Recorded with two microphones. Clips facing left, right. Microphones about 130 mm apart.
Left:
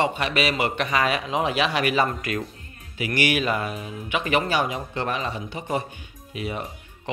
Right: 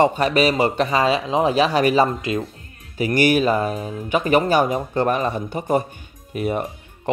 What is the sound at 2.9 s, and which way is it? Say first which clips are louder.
Speech: right 7 dB; 40° right (ahead or behind).